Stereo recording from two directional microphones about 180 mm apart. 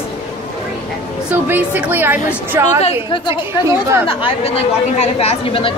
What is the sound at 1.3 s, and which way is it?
Speech, 10° right (ahead or behind).